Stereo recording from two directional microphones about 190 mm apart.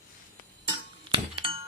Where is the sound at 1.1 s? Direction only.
25° right (ahead or behind).